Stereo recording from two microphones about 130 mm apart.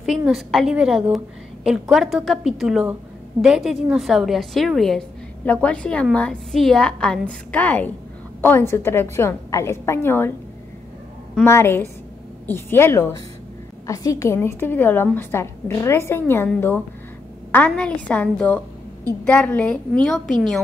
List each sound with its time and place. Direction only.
0.0 s a woman's voice: centre (ahead or behind); by 10.3 s 15° left (ahead or behind)
11.4 s a woman's voice: 20° left (ahead or behind)